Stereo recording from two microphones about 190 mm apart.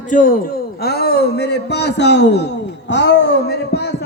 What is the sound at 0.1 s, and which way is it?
A man's voice, 45° left (ahead or behind).